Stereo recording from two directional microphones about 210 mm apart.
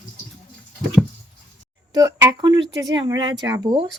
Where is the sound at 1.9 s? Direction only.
15° right (ahead or behind).